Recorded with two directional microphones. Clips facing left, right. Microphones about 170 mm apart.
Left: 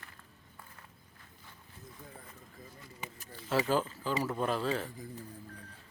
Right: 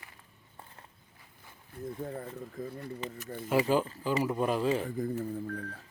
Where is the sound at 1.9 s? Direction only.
55° right (ahead or behind).